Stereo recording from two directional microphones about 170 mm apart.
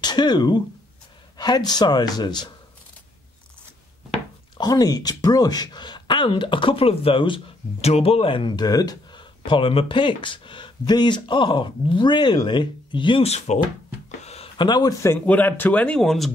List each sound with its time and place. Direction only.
0.0 s speech: 25° left (ahead or behind)
4.6 s speech: 20° left (ahead or behind); by 13.6 s 40° left (ahead or behind)
14.2 s a sound: 35° left (ahead or behind)
15.2 s speech: 10° left (ahead or behind)